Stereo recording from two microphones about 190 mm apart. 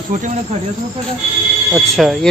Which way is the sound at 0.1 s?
45° right (ahead or behind).